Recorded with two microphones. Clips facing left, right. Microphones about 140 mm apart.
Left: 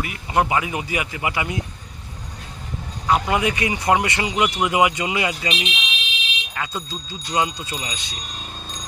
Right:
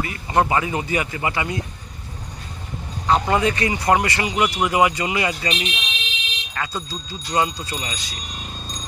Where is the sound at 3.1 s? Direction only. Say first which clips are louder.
Right 1 dB; 10° left (ahead or behind).